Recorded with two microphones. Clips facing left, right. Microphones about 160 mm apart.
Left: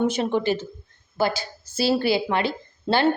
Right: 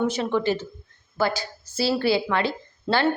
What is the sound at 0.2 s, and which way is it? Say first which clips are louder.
A woman's voice: left 1 dB; 25° left (ahead or behind).